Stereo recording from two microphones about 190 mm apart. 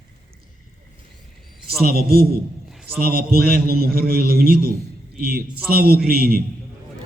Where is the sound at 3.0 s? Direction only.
55° right (ahead or behind).